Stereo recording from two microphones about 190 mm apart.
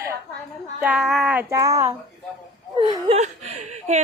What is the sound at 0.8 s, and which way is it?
A woman's voice, 5° right (ahead or behind).